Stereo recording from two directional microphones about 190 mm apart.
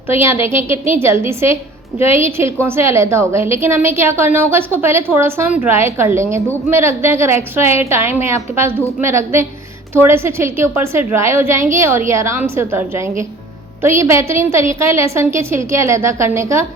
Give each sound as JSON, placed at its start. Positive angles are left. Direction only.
{"t": 0.4, "sound": "a woman's voice", "side_deg": -15}
{"t": 2.0, "sound": "a woman's voice", "side_deg": 30}
{"t": 2.2, "sound": "a woman's voice", "side_deg": -10}